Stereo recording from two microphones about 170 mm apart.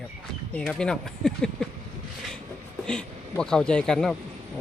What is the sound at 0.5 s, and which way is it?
Speech, 10° left (ahead or behind).